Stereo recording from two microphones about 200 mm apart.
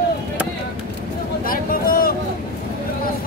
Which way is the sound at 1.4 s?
45° left (ahead or behind).